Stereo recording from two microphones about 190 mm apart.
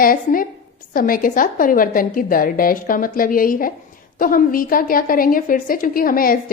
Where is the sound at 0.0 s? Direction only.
50° left (ahead or behind).